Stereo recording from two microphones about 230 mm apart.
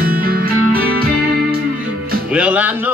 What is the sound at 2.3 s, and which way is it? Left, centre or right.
Music, centre.